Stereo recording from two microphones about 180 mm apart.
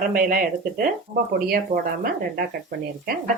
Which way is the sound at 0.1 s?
50° right (ahead or behind).